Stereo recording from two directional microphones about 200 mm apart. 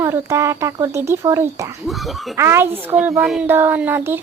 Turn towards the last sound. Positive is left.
turn(degrees=-10)  # may be behind; listen again after turning